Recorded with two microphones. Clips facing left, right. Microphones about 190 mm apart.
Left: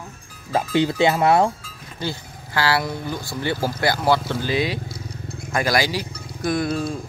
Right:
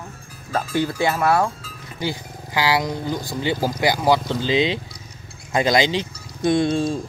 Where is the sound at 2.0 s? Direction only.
15° right (ahead or behind).